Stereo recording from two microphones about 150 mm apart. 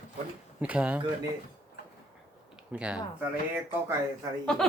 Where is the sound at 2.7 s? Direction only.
5° right (ahead or behind).